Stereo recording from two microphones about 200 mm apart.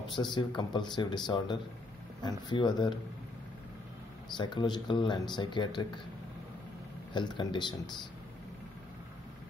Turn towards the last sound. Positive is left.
turn(degrees=20)  # may be behind; listen again after turning